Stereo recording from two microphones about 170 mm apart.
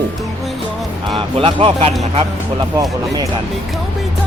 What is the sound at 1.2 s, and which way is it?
Speech, 30° right (ahead or behind).